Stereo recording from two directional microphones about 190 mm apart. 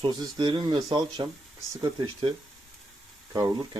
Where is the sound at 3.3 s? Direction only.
20° right (ahead or behind).